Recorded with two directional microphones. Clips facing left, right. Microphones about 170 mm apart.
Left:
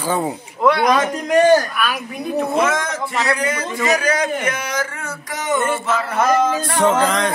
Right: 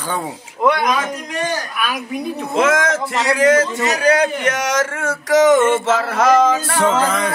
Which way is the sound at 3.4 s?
90° right.